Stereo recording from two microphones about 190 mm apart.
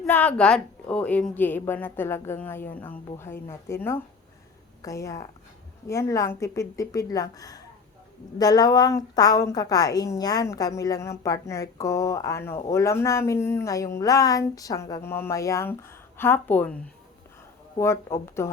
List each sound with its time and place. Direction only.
0.0 s a woman's voice: 5° left (ahead or behind)
17.7 s a woman's voice: 15° left (ahead or behind)